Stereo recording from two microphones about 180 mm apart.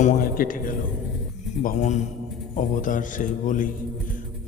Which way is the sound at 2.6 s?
45° left (ahead or behind).